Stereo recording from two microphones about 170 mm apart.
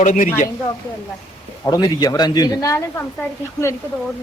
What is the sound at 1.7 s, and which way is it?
Speech, 25° left (ahead or behind).